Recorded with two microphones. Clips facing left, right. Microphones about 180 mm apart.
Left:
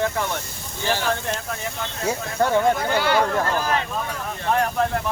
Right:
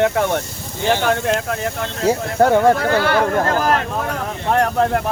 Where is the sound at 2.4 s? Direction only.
60° right (ahead or behind); by 2.9 s 85° right.